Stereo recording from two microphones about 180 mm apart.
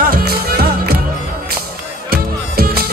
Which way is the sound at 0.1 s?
60° right (ahead or behind).